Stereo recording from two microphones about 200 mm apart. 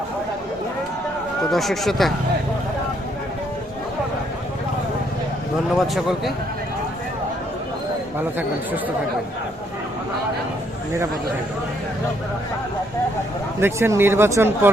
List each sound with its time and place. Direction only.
1.5 s speech: centre (ahead or behind)
5.9 s speech: centre (ahead or behind)
13.6 s speech: 10° right (ahead or behind)